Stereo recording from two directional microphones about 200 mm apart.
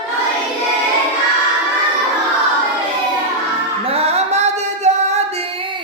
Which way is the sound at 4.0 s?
30° right (ahead or behind).